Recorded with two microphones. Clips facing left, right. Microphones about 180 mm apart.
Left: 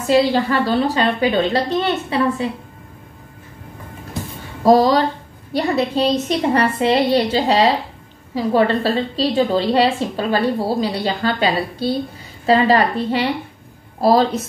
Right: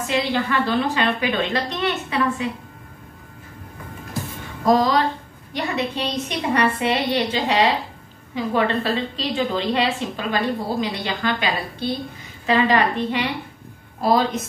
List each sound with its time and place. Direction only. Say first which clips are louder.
0.1 s a woman's voice: left 7 dB; 35° left (ahead or behind)
4.6 s a woman's voice: left 5 dB; 30° left (ahead or behind)